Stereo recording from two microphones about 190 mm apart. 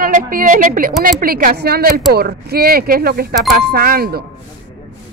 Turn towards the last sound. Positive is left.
turn(degrees=-50)  # may be behind; listen again after turning